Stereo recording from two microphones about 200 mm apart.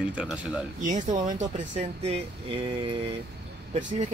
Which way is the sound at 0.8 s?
35° right (ahead or behind).